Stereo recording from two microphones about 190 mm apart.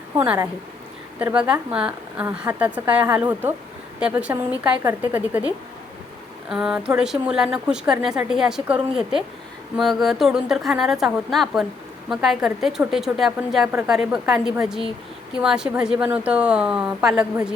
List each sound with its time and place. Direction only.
0.2 s a woman's voice: 15° right (ahead or behind)
6.5 s speech: 5° right (ahead or behind)